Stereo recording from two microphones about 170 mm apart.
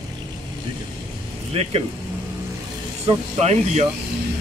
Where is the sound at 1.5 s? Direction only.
35° right (ahead or behind).